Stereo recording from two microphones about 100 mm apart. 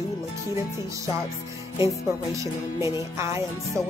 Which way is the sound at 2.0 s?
30° right (ahead or behind).